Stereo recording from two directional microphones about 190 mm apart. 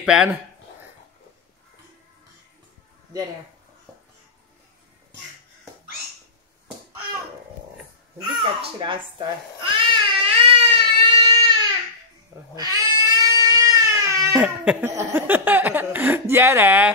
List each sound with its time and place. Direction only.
0.0 s speech: 5° right (ahead or behind)
8.4 s babbling: 25° right (ahead or behind)
12.5 s cat: 20° right (ahead or behind)
14.3 s baby cry: 5° right (ahead or behind)
15.0 s speech: 10° right (ahead or behind)